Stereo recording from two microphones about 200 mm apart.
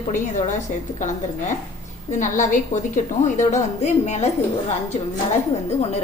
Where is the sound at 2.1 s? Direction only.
40° left (ahead or behind).